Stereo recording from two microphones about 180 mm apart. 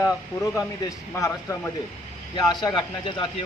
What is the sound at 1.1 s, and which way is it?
A man's voice, 15° left (ahead or behind).